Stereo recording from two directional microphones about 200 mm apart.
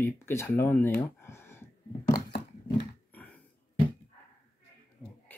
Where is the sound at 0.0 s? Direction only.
10° left (ahead or behind).